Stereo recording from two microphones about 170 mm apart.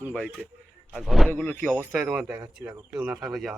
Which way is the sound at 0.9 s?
Centre (ahead or behind).